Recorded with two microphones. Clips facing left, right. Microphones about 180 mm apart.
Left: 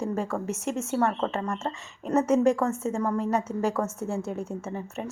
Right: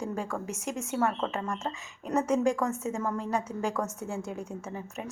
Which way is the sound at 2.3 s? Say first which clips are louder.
Left 5 dB; 35° left (ahead or behind).